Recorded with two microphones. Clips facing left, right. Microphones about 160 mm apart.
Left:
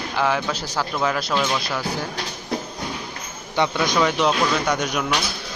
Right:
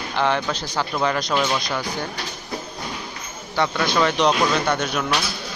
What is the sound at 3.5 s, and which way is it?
Speech, 15° left (ahead or behind).